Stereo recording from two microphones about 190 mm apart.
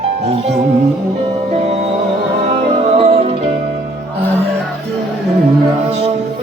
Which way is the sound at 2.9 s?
35° right (ahead or behind).